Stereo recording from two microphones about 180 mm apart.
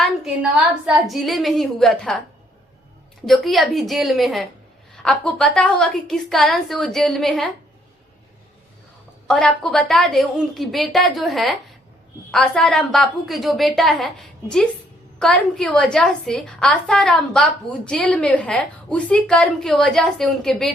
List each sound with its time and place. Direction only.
0.9 s a woman's voice: centre (ahead or behind)
3.2 s a woman's voice: centre (ahead or behind)
9.2 s a woman's voice: 5° left (ahead or behind)